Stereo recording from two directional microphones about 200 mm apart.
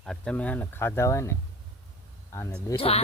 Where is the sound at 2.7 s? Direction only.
30° left (ahead or behind).